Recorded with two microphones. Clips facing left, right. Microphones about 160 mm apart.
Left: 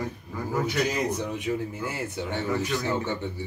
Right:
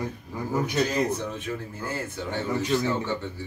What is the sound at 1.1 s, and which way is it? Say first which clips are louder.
Speech: left 2 dB; 15° left (ahead or behind).